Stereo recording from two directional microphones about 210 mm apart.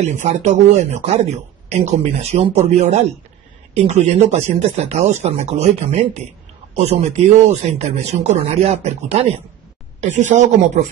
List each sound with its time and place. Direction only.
0.0 s speech: 35° right (ahead or behind)